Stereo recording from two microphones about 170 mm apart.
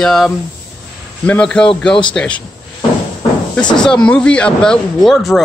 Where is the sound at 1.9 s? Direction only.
30° left (ahead or behind).